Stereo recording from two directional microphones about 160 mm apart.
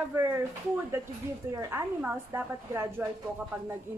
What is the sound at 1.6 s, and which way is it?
Speech, 15° right (ahead or behind).